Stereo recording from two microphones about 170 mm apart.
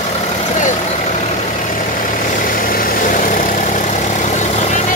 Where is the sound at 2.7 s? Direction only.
55° left (ahead or behind).